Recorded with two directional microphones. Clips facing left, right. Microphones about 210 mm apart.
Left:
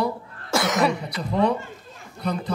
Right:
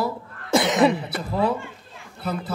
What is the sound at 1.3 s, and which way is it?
A man's voice, 5° right (ahead or behind).